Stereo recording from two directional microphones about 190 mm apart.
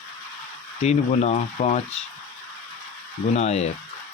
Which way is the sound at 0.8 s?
35° left (ahead or behind).